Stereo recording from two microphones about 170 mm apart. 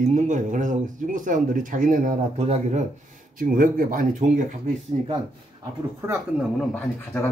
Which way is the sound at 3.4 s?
55° right (ahead or behind).